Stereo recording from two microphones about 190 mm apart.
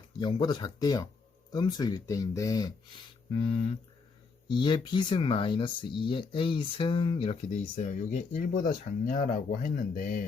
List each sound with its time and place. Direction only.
0.2 s speech: 25° left (ahead or behind); by 10.2 s 45° left (ahead or behind)